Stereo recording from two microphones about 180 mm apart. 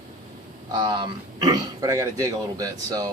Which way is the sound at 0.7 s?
25° right (ahead or behind).